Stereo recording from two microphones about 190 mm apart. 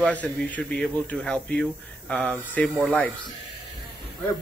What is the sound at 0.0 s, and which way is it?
Speech, 10° left (ahead or behind).